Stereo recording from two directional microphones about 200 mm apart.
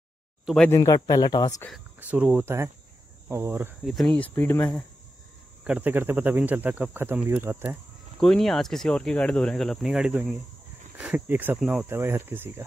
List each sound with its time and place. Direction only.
0.7 s speech: 15° left (ahead or behind)
2.0 s speech: 5° right (ahead or behind)
3.9 s speech: 5° left (ahead or behind)
5.6 s speech: 5° right (ahead or behind)
8.2 s speech: centre (ahead or behind)